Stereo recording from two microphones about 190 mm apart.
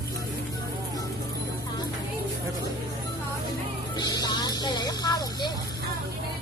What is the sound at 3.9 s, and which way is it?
Speech, 20° left (ahead or behind).